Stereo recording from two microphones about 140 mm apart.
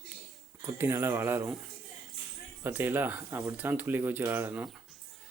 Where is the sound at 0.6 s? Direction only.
15° right (ahead or behind).